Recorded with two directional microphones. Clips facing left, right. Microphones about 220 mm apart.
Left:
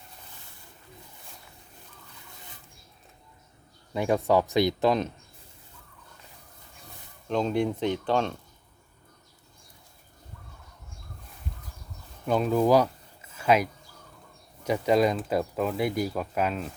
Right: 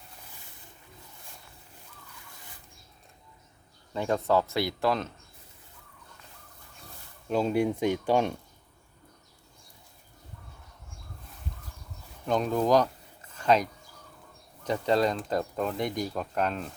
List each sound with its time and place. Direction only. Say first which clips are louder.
3.9 s speech: left 3 dB; 15° left (ahead or behind)
7.3 s speech: even; 10° right (ahead or behind)
12.2 s a sound: left 3 dB; 5° left (ahead or behind)
14.6 s speech: left 3 dB; 10° left (ahead or behind)